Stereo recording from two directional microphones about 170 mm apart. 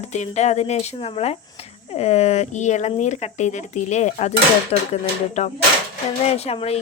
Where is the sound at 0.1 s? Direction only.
40° left (ahead or behind).